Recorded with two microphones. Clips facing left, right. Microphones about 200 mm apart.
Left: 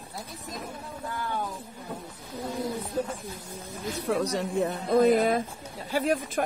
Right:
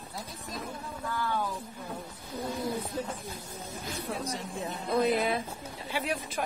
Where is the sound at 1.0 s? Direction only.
20° left (ahead or behind).